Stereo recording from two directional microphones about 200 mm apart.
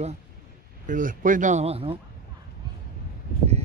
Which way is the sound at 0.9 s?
40° right (ahead or behind).